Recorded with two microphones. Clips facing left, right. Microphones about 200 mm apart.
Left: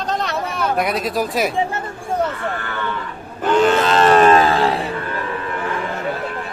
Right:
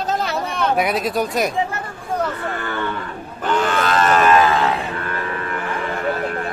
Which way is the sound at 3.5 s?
25° left (ahead or behind).